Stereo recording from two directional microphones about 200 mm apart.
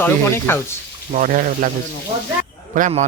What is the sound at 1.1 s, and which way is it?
Speech, 40° right (ahead or behind).